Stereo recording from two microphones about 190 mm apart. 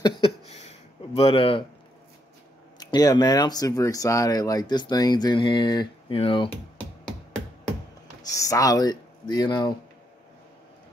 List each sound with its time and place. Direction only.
0.5 s a sound: 35° left (ahead or behind)
2.8 s speech: 20° left (ahead or behind)
8.2 s speech: 15° left (ahead or behind)